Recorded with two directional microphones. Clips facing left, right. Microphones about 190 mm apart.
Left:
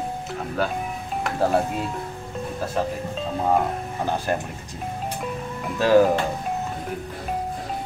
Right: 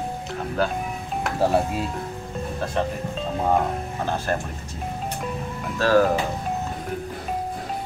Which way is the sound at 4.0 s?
15° left (ahead or behind).